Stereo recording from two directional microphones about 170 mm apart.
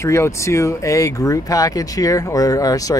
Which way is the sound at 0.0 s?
15° left (ahead or behind).